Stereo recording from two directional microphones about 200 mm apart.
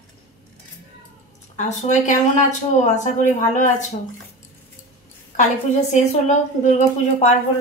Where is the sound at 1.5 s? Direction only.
40° left (ahead or behind).